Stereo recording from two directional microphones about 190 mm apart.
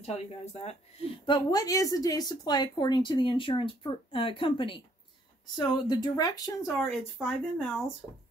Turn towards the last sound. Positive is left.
turn(degrees=0)  # may be behind; listen again after turning